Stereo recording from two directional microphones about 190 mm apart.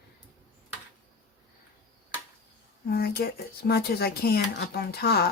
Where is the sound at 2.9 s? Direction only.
55° left (ahead or behind).